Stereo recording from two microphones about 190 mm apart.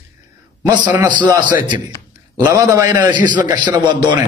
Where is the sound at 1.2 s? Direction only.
25° right (ahead or behind).